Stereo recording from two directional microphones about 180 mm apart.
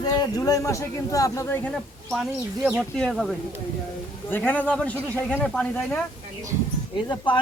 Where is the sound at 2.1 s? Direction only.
Centre (ahead or behind).